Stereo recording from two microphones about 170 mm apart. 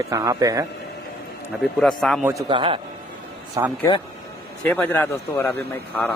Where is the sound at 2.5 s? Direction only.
30° right (ahead or behind).